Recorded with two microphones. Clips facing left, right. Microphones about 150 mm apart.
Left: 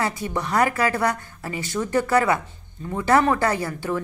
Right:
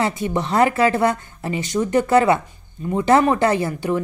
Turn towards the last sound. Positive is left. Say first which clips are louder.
# right 5 dB
turn(degrees=-20)  # may be behind; listen again after turning